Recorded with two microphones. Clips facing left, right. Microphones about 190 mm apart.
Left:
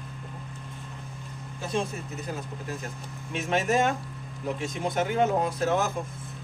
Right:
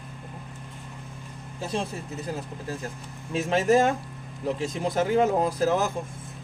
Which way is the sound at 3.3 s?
30° right (ahead or behind).